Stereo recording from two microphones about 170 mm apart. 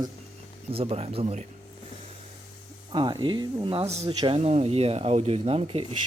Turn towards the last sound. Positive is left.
turn(degrees=-35)  # may be behind; listen again after turning